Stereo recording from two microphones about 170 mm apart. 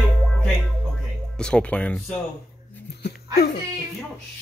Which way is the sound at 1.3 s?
5° left (ahead or behind).